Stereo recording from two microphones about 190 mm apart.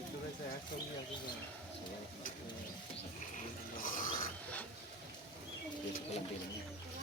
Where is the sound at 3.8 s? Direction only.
45° left (ahead or behind).